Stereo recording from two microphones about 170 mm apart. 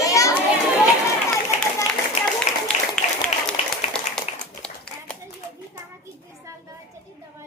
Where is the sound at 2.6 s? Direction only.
5° left (ahead or behind).